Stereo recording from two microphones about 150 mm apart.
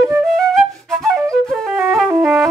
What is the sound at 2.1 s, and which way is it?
Music, 15° right (ahead or behind).